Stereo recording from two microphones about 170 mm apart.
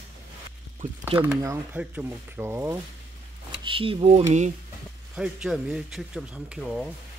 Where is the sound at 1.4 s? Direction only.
15° right (ahead or behind).